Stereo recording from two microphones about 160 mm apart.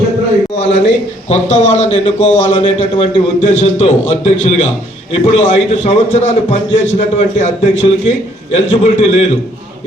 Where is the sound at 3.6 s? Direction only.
45° left (ahead or behind).